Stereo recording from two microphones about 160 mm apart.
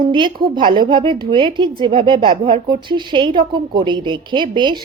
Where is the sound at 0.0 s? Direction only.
30° right (ahead or behind).